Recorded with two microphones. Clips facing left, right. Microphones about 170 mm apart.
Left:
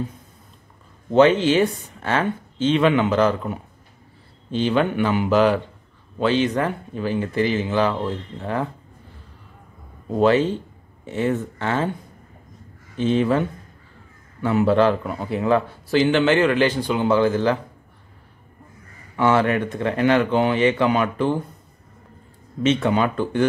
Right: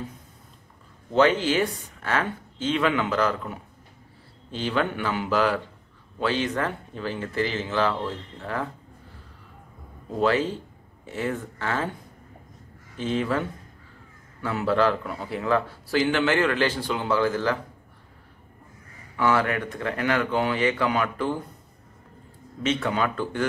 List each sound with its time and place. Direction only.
1.1 s speech: 20° left (ahead or behind)
10.1 s speech: 20° left (ahead or behind)
12.9 s speech: 20° left (ahead or behind)
19.1 s speech: 25° left (ahead or behind)
22.6 s speech: 20° left (ahead or behind)